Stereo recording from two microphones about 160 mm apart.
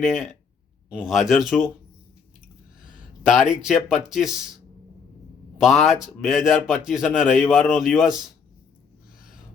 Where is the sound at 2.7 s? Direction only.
55° left (ahead or behind).